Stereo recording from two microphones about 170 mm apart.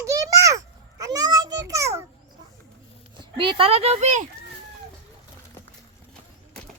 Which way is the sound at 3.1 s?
30° right (ahead or behind).